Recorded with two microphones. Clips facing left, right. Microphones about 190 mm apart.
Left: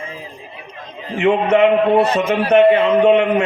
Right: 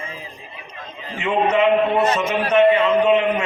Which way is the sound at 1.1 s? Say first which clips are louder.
Left 5 dB; 60° left (ahead or behind).